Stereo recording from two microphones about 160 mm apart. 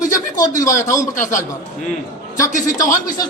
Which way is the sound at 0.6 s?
20° left (ahead or behind).